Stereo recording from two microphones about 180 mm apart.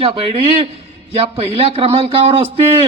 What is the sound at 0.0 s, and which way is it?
A man's voice, 30° right (ahead or behind).